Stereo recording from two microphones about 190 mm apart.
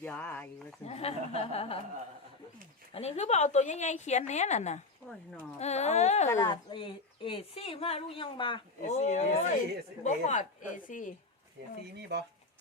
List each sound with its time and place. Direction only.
0.0 s speech: 10° left (ahead or behind)
0.9 s a woman's voice: 35° left (ahead or behind)
2.9 s a woman's voice: 35° left (ahead or behind)
6.2 s a woman's voice: 20° left (ahead or behind)
9.0 s a woman's voice: 35° left (ahead or behind)
11.9 s speech: 60° right (ahead or behind)